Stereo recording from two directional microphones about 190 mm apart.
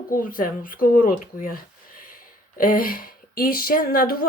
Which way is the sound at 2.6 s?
50° left (ahead or behind).